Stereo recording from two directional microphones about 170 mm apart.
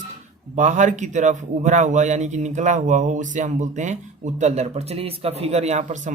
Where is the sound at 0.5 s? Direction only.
45° right (ahead or behind).